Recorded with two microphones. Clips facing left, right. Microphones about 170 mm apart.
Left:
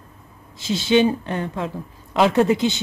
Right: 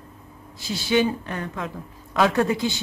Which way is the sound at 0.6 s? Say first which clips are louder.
Left 4 dB; 20° left (ahead or behind).